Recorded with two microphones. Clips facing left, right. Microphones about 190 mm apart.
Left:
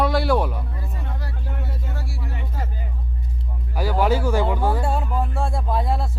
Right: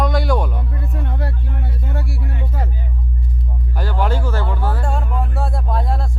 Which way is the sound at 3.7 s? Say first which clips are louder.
Left 2 dB; 10° left (ahead or behind).